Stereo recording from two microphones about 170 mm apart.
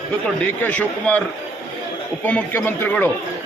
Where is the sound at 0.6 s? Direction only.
10° left (ahead or behind).